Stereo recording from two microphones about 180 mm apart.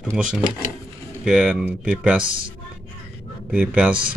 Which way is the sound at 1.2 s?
5° right (ahead or behind).